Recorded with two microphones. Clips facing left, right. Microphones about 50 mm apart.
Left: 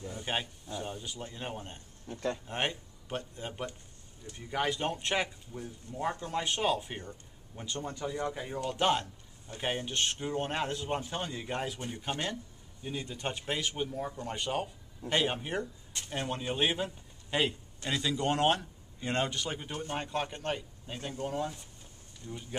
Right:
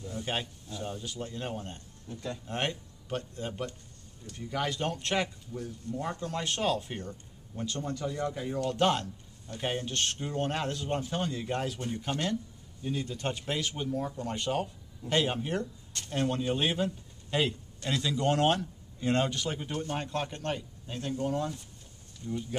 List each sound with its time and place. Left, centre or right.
0.1 s speech: centre
2.0 s speech: left
2.4 s speech: centre